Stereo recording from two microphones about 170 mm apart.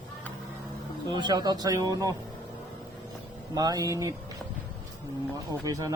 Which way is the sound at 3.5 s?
20° right (ahead or behind).